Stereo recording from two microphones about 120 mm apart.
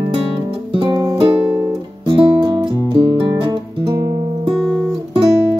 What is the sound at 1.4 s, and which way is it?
Guitar, 10° right (ahead or behind).